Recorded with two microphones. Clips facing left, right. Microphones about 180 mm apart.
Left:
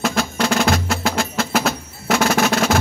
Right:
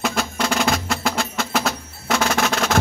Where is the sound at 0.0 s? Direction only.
Centre (ahead or behind).